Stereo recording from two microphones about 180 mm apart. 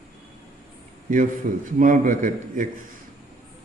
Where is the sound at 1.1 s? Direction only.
45° right (ahead or behind).